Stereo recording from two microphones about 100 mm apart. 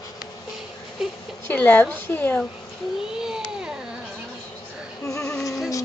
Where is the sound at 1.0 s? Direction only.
5° right (ahead or behind).